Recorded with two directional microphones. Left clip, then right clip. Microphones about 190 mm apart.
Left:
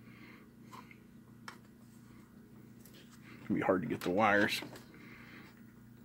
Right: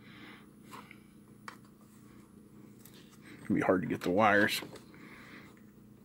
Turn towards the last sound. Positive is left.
turn(degrees=-20)  # may be behind; listen again after turning